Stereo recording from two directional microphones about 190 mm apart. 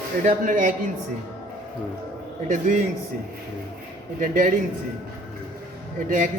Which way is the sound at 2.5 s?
40° right (ahead or behind).